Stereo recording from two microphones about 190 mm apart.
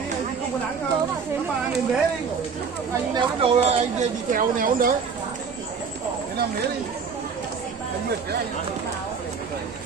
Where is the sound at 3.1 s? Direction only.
30° right (ahead or behind).